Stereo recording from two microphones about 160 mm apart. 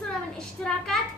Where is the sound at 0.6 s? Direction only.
5° left (ahead or behind).